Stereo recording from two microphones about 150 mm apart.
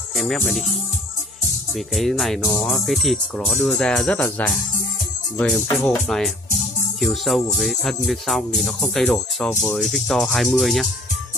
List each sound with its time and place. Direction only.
0.1 s speech: centre (ahead or behind)
1.9 s music: centre (ahead or behind)
9.5 s speech: 15° left (ahead or behind)
9.8 s music: centre (ahead or behind)